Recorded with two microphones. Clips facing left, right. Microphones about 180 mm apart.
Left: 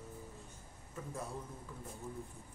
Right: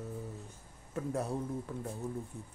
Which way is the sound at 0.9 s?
70° right (ahead or behind).